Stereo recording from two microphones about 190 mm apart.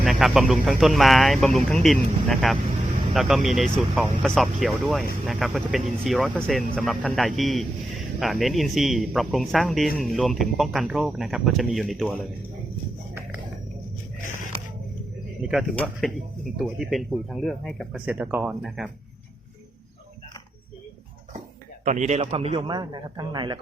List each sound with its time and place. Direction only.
0.0 s speech: centre (ahead or behind)
14.2 s biting: 40° left (ahead or behind)
15.4 s speech: centre (ahead or behind)
21.8 s a man's voice: 40° right (ahead or behind); by 23.6 s 20° right (ahead or behind)